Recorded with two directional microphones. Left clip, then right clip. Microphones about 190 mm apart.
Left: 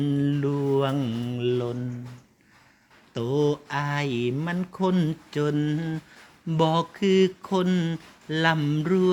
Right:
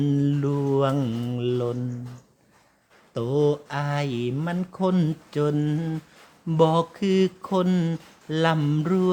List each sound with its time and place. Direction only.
0.0 s mantra: 30° right (ahead or behind)
3.2 s speech: 20° right (ahead or behind)